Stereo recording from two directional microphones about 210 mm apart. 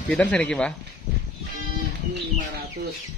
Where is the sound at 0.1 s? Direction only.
5° left (ahead or behind).